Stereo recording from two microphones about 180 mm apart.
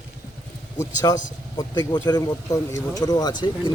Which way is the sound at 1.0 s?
20° left (ahead or behind).